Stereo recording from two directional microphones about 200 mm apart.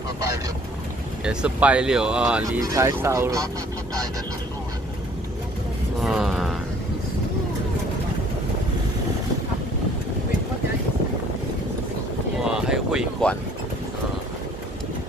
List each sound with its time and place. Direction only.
1.2 s speech: 5° right (ahead or behind)
2.4 s speech: 15° right (ahead or behind)
5.9 s speech: centre (ahead or behind)
12.4 s a sound: 5° right (ahead or behind)